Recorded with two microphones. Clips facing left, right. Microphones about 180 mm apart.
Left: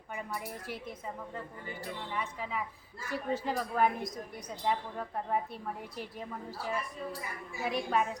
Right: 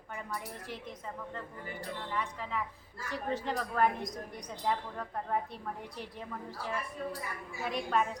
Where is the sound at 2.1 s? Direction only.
5° left (ahead or behind).